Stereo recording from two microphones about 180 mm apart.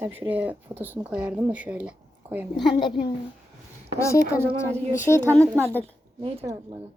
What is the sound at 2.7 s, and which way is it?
Speech, 25° left (ahead or behind).